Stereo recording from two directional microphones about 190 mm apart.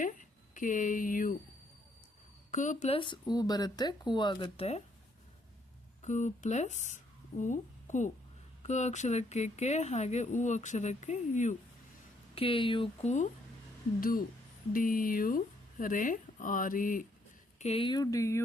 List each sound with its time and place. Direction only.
0.0 s speech: 45° left (ahead or behind)
2.5 s speech: 40° left (ahead or behind)
6.0 s a woman's voice: 40° left (ahead or behind)
14.0 s speech: 50° left (ahead or behind)
17.6 s speech: 30° left (ahead or behind); by 18.4 s 15° left (ahead or behind)